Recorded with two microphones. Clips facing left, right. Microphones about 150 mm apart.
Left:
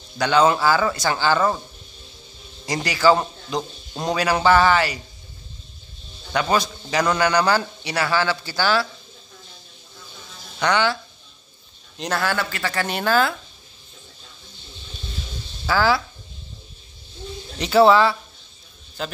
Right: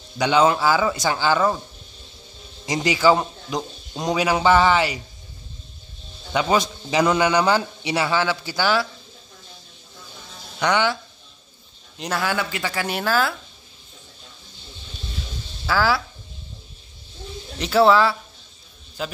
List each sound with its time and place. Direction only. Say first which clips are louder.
0.4 s speech: left 1 dB; 10° right (ahead or behind)
2.6 s speech: even; 20° right (ahead or behind)
3.9 s a man's voice: even; centre (ahead or behind)
4.5 s speech: left 1 dB; 20° right (ahead or behind)
6.5 s speech: right 2 dB; 20° right (ahead or behind)
7.0 s speech: right 1 dB; 10° right (ahead or behind)
7.4 s speech: right 1 dB; 20° right (ahead or behind)
10.6 s speech: even; 15° right (ahead or behind)
12.0 s speech: left 1 dB; 10° right (ahead or behind)
15.6 s speech: left 1 dB; 5° right (ahead or behind)
17.6 s speech: left 1 dB; centre (ahead or behind)